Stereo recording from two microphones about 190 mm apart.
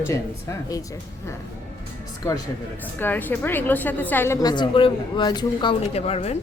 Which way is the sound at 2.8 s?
10° left (ahead or behind).